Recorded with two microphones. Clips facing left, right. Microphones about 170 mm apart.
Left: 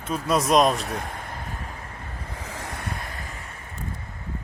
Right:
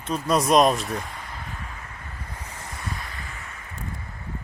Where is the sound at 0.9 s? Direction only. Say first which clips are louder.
Even; 50° left (ahead or behind).